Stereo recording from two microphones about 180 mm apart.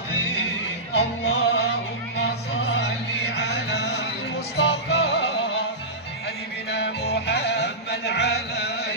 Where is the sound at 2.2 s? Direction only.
80° left.